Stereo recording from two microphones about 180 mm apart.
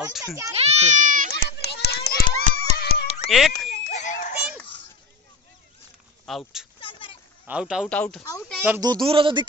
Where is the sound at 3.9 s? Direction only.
45° left (ahead or behind).